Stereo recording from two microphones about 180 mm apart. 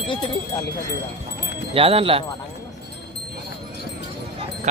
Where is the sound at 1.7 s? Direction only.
30° right (ahead or behind).